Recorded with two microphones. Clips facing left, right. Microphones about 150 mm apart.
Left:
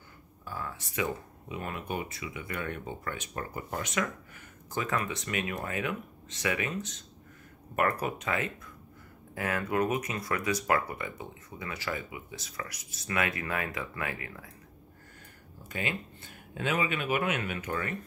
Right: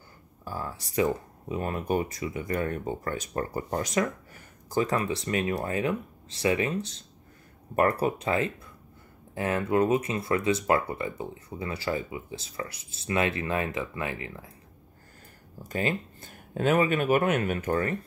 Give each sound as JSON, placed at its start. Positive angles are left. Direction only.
{"t": 0.5, "sound": "speech", "side_deg": -35}
{"t": 15.7, "sound": "speech", "side_deg": -35}